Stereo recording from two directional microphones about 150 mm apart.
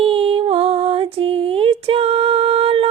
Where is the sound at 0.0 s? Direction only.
40° right (ahead or behind).